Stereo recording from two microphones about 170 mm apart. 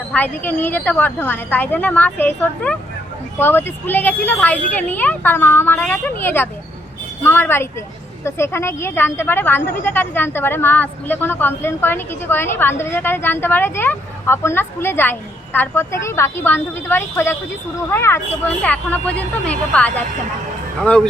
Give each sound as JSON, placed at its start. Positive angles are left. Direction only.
{"t": 0.1, "sound": "a woman's voice", "side_deg": 10}